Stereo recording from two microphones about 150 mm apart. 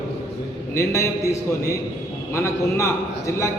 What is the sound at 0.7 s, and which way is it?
Speech, 20° left (ahead or behind).